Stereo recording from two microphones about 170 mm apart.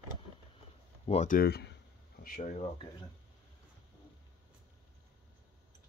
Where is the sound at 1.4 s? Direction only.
70° left (ahead or behind).